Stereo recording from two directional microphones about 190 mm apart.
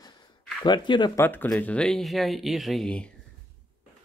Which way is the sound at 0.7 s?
25° left (ahead or behind).